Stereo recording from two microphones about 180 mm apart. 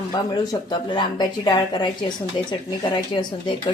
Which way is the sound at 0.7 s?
25° left (ahead or behind).